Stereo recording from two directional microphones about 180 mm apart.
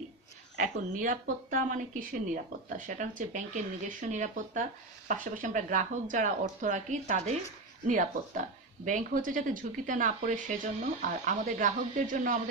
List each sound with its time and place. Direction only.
0.6 s speech: 50° right (ahead or behind)